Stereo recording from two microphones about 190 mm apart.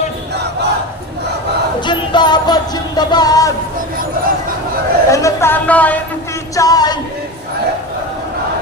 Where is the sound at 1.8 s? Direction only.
25° left (ahead or behind).